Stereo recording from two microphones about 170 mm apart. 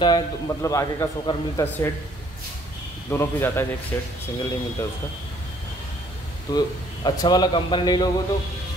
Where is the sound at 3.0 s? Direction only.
15° left (ahead or behind).